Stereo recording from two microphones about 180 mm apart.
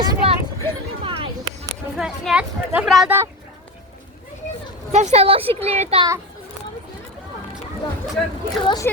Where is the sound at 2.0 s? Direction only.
5° right (ahead or behind).